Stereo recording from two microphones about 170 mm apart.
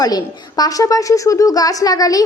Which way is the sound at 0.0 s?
25° left (ahead or behind).